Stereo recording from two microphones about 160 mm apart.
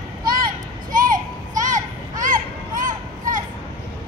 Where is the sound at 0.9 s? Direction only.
60° right (ahead or behind).